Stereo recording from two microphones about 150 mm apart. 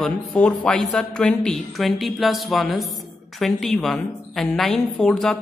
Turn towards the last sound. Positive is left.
turn(degrees=5)  # may be behind; listen again after turning